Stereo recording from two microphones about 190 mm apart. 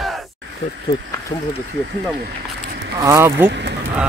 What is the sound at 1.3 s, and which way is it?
Speech, 25° left (ahead or behind).